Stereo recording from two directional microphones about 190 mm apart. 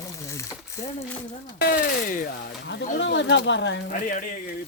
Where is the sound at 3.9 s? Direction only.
45° left (ahead or behind).